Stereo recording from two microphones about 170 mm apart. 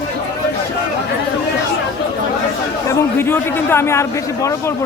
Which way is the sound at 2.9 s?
15° left (ahead or behind).